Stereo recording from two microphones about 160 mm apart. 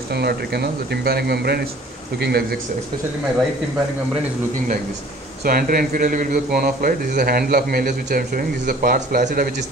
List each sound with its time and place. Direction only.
0.1 s a man's voice: 90° right
5.4 s speech: 65° right (ahead or behind)